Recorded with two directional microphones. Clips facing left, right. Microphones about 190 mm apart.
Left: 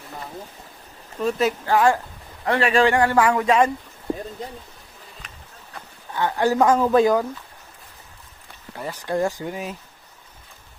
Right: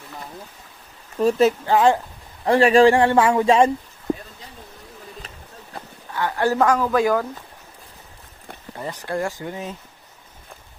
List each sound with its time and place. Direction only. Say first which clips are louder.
1.2 s speech: right 5 dB; 30° right (ahead or behind)
2.4 s speech: right 5 dB; 35° right (ahead or behind)
5.2 s a sound: right 4 dB; 35° right (ahead or behind)
6.1 s a woman's voice: left 1 dB; 15° left (ahead or behind)
8.7 s speech: even; 5° left (ahead or behind)
9.0 s a woman's voice: left 3 dB; 20° left (ahead or behind)